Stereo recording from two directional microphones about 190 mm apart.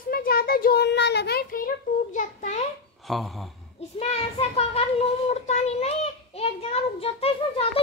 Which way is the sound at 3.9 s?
30° left (ahead or behind).